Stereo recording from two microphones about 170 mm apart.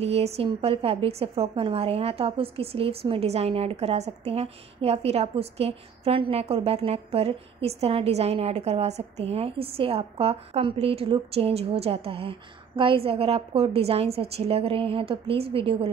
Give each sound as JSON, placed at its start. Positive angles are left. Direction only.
{"t": 0.0, "sound": "a woman's voice", "side_deg": -40}